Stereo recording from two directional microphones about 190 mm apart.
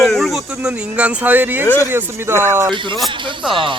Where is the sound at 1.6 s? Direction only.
10° left (ahead or behind).